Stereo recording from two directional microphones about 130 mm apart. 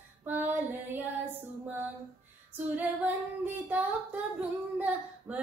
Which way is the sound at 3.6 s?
10° right (ahead or behind).